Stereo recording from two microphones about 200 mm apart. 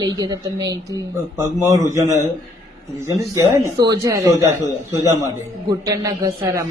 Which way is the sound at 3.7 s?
20° right (ahead or behind).